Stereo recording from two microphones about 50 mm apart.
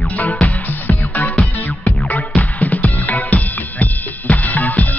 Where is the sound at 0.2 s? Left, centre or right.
Left.